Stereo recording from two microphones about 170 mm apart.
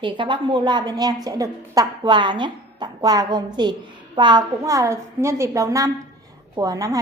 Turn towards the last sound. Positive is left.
turn(degrees=-20)  # may be behind; listen again after turning